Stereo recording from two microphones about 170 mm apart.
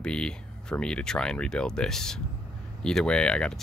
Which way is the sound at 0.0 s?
5° left (ahead or behind).